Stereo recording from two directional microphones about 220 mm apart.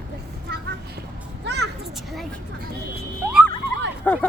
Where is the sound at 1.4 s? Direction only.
50° right (ahead or behind).